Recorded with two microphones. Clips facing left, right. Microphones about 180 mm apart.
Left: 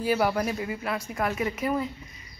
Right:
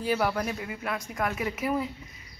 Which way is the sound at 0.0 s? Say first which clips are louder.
Left 2 dB; 5° left (ahead or behind).